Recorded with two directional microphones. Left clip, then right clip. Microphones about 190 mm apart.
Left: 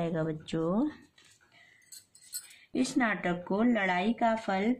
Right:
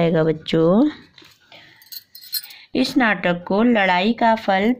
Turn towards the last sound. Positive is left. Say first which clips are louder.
# right 12 dB
turn(degrees=-40)  # may be behind; listen again after turning